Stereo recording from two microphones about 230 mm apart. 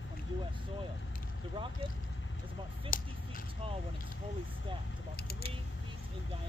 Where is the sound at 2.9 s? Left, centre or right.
Left.